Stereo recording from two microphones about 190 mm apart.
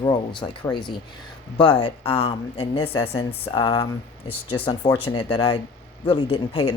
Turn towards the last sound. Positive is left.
turn(degrees=25)  # may be behind; listen again after turning